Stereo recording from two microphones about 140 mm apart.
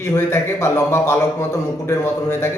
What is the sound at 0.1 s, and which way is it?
A man's voice, 20° left (ahead or behind).